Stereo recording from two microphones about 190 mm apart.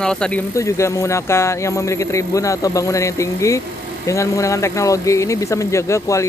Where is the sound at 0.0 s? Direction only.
5° left (ahead or behind).